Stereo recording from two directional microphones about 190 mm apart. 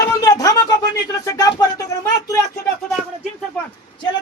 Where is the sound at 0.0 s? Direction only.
20° left (ahead or behind).